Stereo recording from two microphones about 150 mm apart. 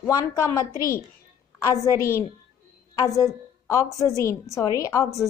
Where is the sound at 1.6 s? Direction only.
20° left (ahead or behind).